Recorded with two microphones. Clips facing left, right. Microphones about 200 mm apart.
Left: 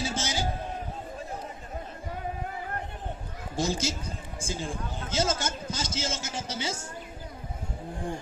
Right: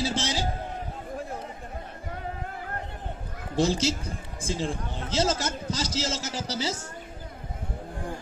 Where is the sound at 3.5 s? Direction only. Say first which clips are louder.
Right 5 dB; 35° right (ahead or behind).